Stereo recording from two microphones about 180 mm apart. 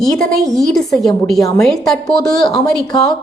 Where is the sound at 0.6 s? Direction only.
Centre (ahead or behind).